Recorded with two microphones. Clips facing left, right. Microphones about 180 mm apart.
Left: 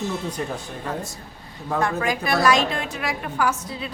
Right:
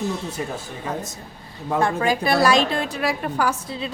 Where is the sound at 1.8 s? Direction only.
30° right (ahead or behind).